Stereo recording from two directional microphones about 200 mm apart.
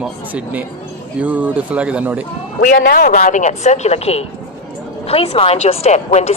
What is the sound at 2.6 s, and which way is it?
Speech, 40° left (ahead or behind).